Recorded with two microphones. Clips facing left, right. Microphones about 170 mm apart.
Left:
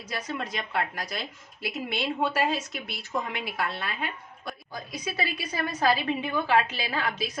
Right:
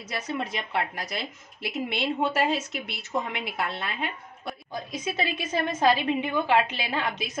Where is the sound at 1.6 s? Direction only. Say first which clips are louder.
Right 2 dB; 25° right (ahead or behind).